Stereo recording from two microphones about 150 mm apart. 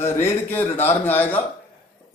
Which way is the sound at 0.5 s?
15° left (ahead or behind).